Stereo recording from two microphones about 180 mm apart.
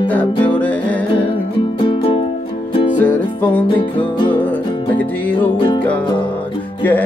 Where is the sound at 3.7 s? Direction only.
30° left (ahead or behind).